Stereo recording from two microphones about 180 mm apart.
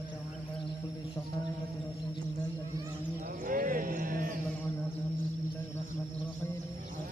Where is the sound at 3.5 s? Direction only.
50° right (ahead or behind).